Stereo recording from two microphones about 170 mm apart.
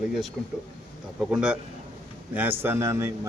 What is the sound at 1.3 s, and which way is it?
Speech, 5° right (ahead or behind).